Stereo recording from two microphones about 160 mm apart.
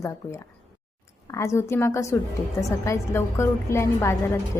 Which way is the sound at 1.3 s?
20° left (ahead or behind).